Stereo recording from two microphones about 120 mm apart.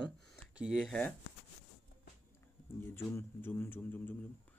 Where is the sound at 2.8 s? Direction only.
20° left (ahead or behind).